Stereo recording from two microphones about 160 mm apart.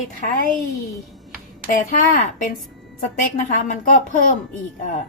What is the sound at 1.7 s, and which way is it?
A woman's voice, 55° left (ahead or behind).